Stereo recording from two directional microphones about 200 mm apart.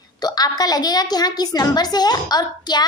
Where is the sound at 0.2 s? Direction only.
20° left (ahead or behind).